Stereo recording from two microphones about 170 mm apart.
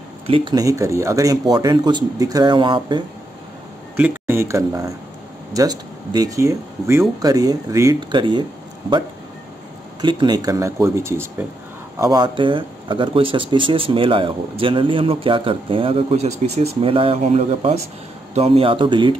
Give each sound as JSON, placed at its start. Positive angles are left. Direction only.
{"t": 0.3, "sound": "speech", "side_deg": -25}
{"t": 3.9, "sound": "speech", "side_deg": -10}
{"t": 10.0, "sound": "speech", "side_deg": -25}